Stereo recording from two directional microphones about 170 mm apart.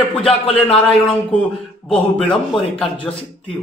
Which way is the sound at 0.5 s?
5° left (ahead or behind).